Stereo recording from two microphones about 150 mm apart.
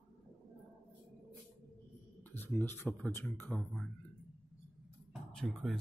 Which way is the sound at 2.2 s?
15° left (ahead or behind).